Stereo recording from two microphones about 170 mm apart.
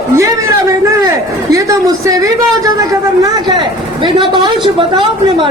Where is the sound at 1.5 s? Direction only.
20° right (ahead or behind).